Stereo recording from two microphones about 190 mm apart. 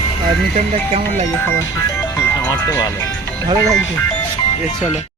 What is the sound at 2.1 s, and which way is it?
Music, 15° left (ahead or behind).